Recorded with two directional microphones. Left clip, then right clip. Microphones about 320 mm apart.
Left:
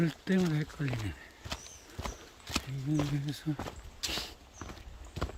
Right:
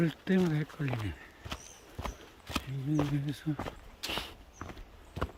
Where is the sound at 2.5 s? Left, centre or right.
Centre.